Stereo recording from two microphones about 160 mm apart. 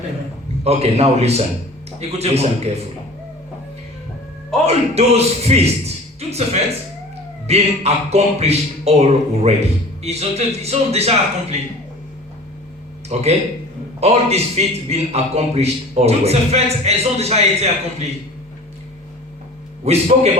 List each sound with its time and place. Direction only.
0.6 s a man's voice: 40° right (ahead or behind)
4.6 s a man's voice: 40° right (ahead or behind)
13.1 s a man's voice: 45° right (ahead or behind)
19.8 s a man's voice: 40° right (ahead or behind)